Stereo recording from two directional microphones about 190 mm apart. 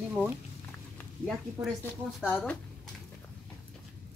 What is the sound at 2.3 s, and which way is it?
Speech, 5° left (ahead or behind).